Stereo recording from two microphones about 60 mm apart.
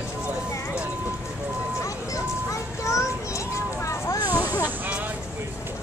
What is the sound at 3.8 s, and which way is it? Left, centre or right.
Vehicle, left.